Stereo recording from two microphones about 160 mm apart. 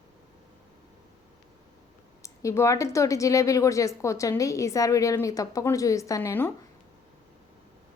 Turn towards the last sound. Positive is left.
turn(degrees=15)  # may be behind; listen again after turning